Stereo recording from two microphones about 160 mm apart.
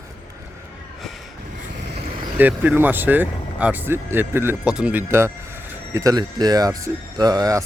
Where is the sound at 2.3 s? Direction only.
10° right (ahead or behind).